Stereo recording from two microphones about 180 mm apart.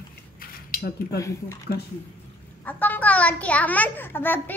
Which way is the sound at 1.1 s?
15° left (ahead or behind).